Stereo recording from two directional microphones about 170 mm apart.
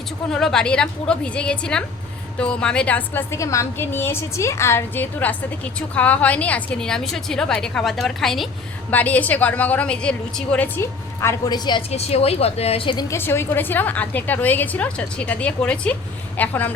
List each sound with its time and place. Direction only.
0.3 s a woman's voice: 5° left (ahead or behind); by 11.8 s 25° left (ahead or behind)
11.9 s a woman's voice: 40° left (ahead or behind)
13.1 s a woman's voice: 15° left (ahead or behind)